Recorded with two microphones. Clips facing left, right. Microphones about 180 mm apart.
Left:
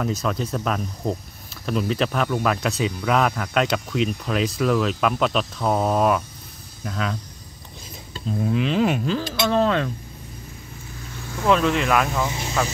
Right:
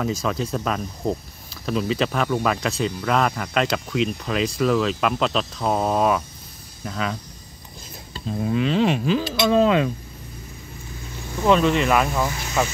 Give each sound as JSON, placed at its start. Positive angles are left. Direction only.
{"t": 0.0, "sound": "speech", "side_deg": 0}
{"t": 9.1, "sound": "speech", "side_deg": -10}
{"t": 11.4, "sound": "speech", "side_deg": 0}
{"t": 12.3, "sound": "speech", "side_deg": 25}